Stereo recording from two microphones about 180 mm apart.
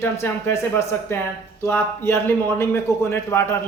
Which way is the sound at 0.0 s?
15° left (ahead or behind).